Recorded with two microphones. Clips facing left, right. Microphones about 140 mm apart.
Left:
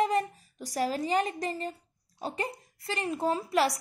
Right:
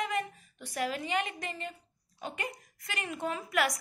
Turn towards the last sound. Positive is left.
turn(degrees=30)  # may be behind; listen again after turning